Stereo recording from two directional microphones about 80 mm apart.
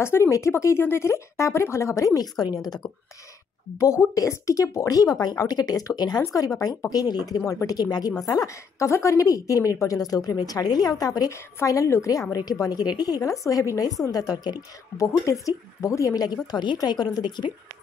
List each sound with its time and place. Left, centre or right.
0.0 s speech: left
3.8 s a woman's voice: left
8.3 s a woman's voice: left
13.2 s a woman's voice: left
15.0 s a woman's voice: left